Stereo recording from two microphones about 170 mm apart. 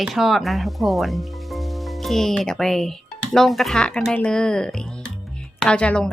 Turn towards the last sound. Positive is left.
turn(degrees=5)  # may be behind; listen again after turning